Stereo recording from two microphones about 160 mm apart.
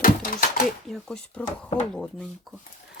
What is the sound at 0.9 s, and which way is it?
Speech, 5° left (ahead or behind).